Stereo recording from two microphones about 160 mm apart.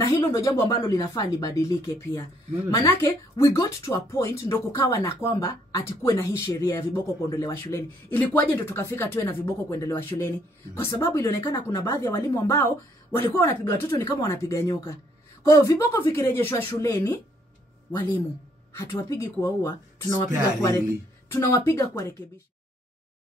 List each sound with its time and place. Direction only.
0.0 s speech: 20° left (ahead or behind)
18.7 s speech: 20° left (ahead or behind)
21.3 s speech: 15° left (ahead or behind)